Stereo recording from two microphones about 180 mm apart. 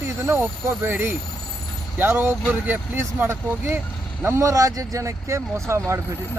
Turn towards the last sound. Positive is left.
turn(degrees=-15)  # may be behind; listen again after turning